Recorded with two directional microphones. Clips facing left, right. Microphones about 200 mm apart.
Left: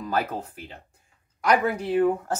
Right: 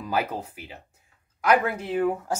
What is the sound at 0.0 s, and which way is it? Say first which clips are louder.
Speech: even; 10° right (ahead or behind).